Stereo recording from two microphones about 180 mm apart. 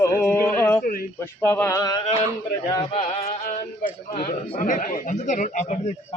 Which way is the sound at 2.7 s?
25° left (ahead or behind).